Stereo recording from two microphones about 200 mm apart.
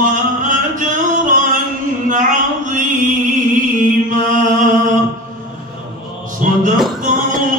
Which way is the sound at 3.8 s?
40° right (ahead or behind).